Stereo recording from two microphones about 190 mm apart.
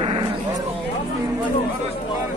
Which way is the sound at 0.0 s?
30° right (ahead or behind).